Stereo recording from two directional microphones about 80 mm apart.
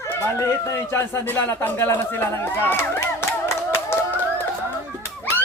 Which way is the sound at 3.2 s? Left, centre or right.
Left.